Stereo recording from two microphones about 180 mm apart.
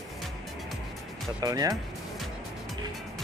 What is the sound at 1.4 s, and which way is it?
Speech, 20° right (ahead or behind).